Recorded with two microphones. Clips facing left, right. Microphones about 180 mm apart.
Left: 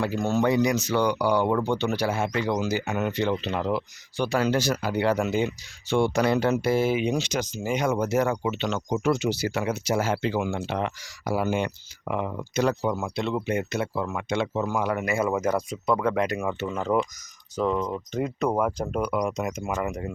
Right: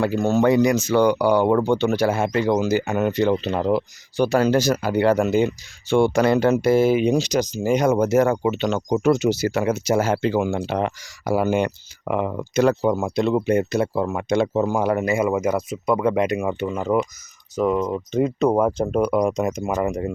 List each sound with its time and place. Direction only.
0.0 s speech: 45° right (ahead or behind)
13.0 s speech: 40° right (ahead or behind)
15.0 s speech: 15° right (ahead or behind); by 20.1 s 35° right (ahead or behind)